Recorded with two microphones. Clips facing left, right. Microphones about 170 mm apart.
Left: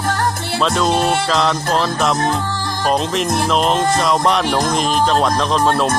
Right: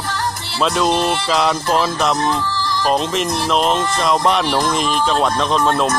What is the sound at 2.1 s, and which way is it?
Music, 50° left (ahead or behind).